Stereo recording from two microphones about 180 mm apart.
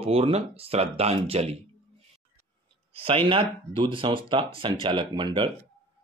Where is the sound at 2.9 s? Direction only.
30° right (ahead or behind).